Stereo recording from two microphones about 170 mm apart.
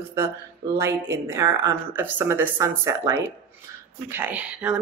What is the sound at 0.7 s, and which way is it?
A woman's voice, 15° right (ahead or behind).